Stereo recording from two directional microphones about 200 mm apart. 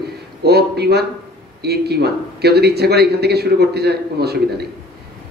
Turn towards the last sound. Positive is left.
turn(degrees=-55)  # may be behind; listen again after turning